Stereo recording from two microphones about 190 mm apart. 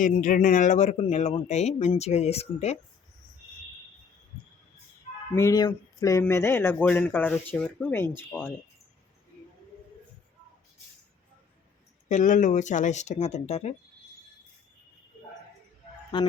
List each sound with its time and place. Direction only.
0.0 s speech: 45° left (ahead or behind)
5.3 s speech: 15° left (ahead or behind)
12.0 s speech: 40° left (ahead or behind)
16.1 s fowl: 25° left (ahead or behind)